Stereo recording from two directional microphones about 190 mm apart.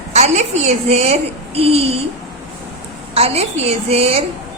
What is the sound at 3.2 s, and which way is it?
A woman's voice, 30° right (ahead or behind).